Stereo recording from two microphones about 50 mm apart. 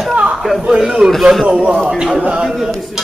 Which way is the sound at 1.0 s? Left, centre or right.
Centre.